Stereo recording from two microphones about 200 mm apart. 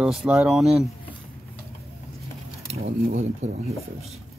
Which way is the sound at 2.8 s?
40° right (ahead or behind).